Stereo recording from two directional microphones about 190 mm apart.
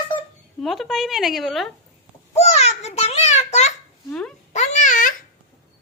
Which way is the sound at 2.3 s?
35° left (ahead or behind).